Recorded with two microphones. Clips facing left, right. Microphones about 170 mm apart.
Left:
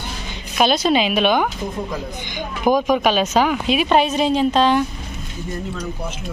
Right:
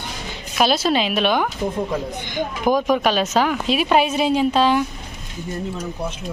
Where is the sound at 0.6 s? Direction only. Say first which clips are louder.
Left 2 dB; centre (ahead or behind).